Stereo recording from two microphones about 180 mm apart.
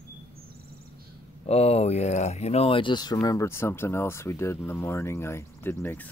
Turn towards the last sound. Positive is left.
turn(degrees=10)  # may be behind; listen again after turning